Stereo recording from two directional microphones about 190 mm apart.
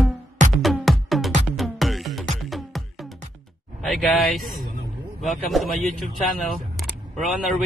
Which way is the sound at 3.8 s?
Centre (ahead or behind).